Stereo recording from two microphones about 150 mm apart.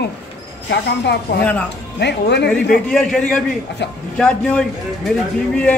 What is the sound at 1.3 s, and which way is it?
Speech, 90° left.